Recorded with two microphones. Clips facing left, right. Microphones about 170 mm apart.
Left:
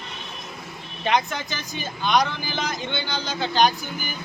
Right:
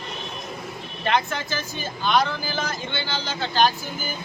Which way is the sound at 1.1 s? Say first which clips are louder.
Even; 15° left (ahead or behind).